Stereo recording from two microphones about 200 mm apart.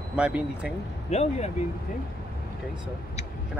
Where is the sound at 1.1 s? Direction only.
35° left (ahead or behind).